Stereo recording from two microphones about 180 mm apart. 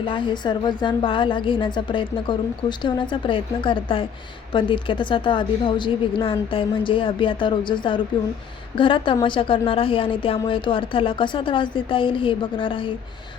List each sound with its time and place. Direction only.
0.1 s a woman's voice: 25° left (ahead or behind)